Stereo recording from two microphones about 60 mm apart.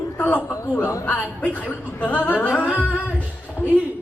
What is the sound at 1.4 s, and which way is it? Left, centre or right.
Speech, left.